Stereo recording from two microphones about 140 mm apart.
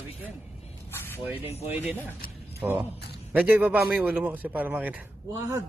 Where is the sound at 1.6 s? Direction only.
10° right (ahead or behind).